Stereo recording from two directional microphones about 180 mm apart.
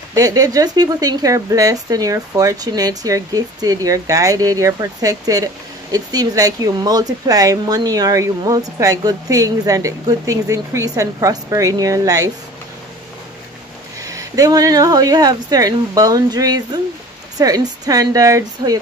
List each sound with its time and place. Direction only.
0.1 s a woman's voice: 20° right (ahead or behind)
14.0 s a woman's voice: 20° right (ahead or behind)